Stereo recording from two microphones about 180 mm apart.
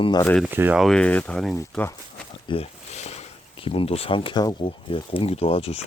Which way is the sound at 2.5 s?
35° left (ahead or behind).